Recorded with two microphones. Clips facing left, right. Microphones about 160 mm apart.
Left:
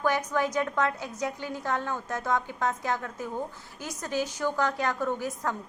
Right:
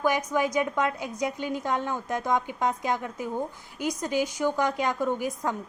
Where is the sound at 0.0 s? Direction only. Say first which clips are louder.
Right 2 dB; 10° right (ahead or behind).